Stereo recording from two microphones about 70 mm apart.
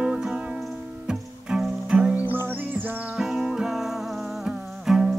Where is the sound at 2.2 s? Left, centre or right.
Right.